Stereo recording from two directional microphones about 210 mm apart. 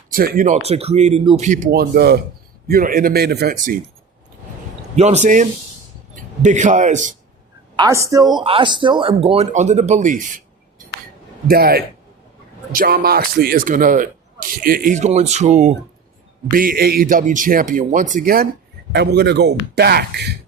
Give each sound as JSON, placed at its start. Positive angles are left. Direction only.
{"t": 0.1, "sound": "speech", "side_deg": -40}
{"t": 1.5, "sound": "speech", "side_deg": -40}
{"t": 4.9, "sound": "speech", "side_deg": -30}
{"t": 7.8, "sound": "speech", "side_deg": -15}
{"t": 18.9, "sound": "speech", "side_deg": -55}